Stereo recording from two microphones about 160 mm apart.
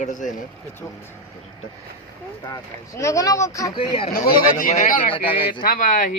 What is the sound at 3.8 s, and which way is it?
Speech, 35° left (ahead or behind).